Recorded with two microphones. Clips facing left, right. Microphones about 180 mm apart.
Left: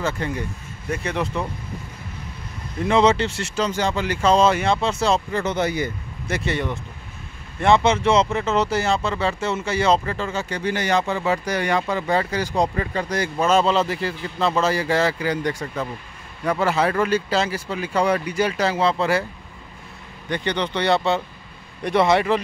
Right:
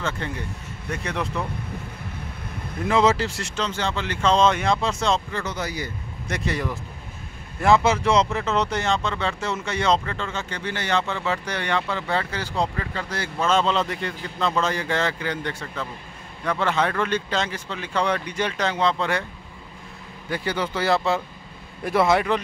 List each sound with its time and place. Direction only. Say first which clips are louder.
0.2 s speech: left 4 dB; 10° left (ahead or behind)
2.8 s speech: left 2 dB; centre (ahead or behind)
5.4 s speech: left 7 dB; 25° left (ahead or behind)
6.2 s speech: left 3 dB; centre (ahead or behind)
20.2 s speech: left 2 dB; 5° right (ahead or behind)